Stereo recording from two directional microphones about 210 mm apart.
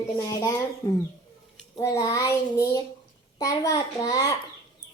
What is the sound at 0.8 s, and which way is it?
A child's voice, 20° left (ahead or behind).